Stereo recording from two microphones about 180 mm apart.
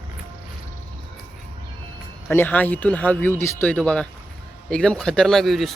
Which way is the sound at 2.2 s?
10° left (ahead or behind).